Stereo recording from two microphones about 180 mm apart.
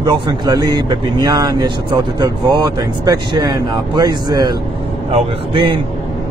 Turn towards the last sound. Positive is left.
turn(degrees=-30)  # may be behind; listen again after turning